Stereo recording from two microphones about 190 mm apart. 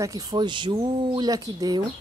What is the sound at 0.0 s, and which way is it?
Speech, 20° right (ahead or behind).